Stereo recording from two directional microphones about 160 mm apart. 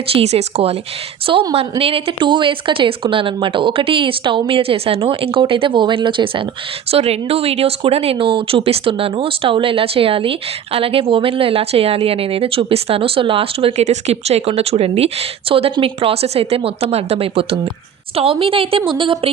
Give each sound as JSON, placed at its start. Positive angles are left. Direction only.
{"t": 0.1, "sound": "speech", "side_deg": -40}